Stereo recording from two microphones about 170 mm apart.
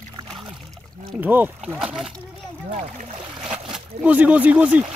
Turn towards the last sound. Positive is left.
turn(degrees=-10)  # may be behind; listen again after turning